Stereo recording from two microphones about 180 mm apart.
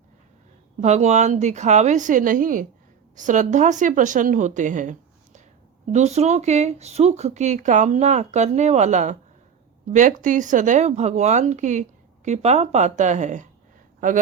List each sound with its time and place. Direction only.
0.8 s speech: 40° right (ahead or behind)